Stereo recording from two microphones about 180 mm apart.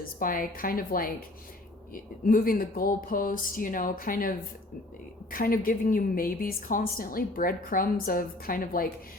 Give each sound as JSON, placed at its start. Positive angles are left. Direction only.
{"t": 0.0, "sound": "a woman's voice", "side_deg": 50}